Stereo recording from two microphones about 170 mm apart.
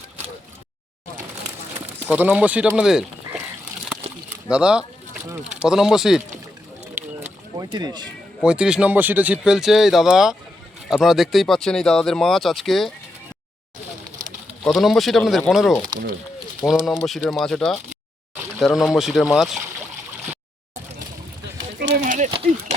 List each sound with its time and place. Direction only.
2.0 s speech: 10° right (ahead or behind)
4.4 s speech: 5° right (ahead or behind)
7.5 s speech: 25° right (ahead or behind)
8.4 s speech: 5° right (ahead or behind)
14.6 s speech: centre (ahead or behind)
21.8 s a sound: 70° right (ahead or behind)
22.0 s a sound: 45° right (ahead or behind)